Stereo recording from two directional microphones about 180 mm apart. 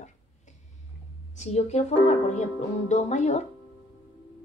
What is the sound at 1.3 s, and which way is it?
Speech, 40° left (ahead or behind).